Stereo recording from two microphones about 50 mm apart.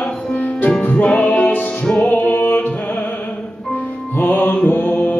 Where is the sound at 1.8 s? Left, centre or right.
Centre.